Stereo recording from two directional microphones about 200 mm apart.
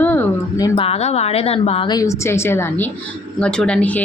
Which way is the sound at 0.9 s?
30° left (ahead or behind).